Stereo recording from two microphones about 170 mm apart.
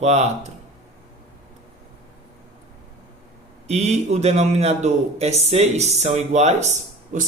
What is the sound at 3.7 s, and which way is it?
Speech, 40° right (ahead or behind).